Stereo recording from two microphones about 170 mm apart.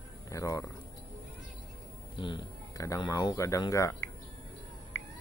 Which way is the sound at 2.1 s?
25° left (ahead or behind).